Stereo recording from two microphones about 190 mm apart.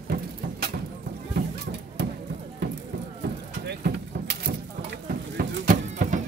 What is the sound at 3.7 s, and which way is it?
Vehicle, 60° right (ahead or behind).